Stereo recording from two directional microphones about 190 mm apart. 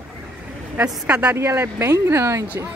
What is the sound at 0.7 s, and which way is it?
Speech, 10° right (ahead or behind).